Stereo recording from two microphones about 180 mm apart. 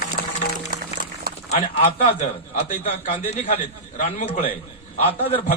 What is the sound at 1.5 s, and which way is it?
A man's voice, 35° left (ahead or behind).